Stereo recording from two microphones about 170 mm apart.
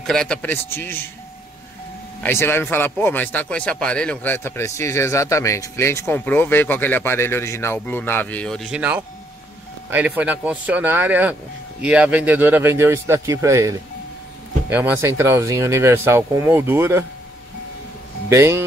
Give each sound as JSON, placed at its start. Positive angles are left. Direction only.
{"t": 0.0, "sound": "a man's voice", "side_deg": 5}
{"t": 2.2, "sound": "a man's voice", "side_deg": 15}
{"t": 18.3, "sound": "speech", "side_deg": -15}